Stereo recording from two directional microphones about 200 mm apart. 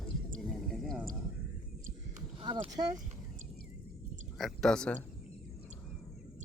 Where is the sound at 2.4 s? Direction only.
25° right (ahead or behind).